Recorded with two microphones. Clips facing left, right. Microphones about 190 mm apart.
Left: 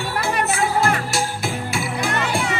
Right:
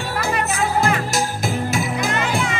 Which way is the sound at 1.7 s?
40° right (ahead or behind).